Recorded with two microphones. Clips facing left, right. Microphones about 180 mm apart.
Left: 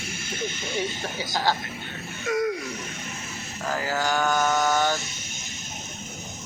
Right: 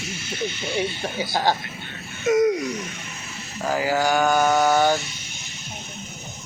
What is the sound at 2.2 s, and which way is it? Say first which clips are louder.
Wail: right 7 dB; 20° right (ahead or behind).